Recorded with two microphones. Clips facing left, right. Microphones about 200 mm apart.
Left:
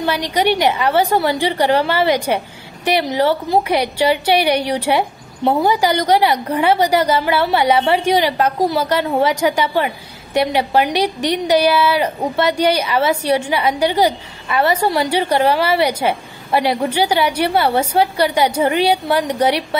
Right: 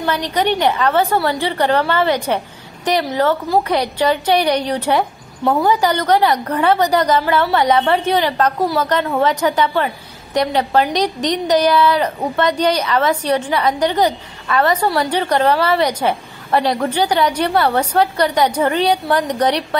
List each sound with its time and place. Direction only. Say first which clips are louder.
0.0 s a woman's voice: left 1 dB; 10° left (ahead or behind)
5.4 s a woman's voice: left 1 dB; 25° left (ahead or behind)
5.7 s a woman's voice: right 1 dB; 10° left (ahead or behind)